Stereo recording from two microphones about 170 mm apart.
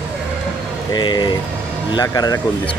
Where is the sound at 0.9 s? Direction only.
25° left (ahead or behind).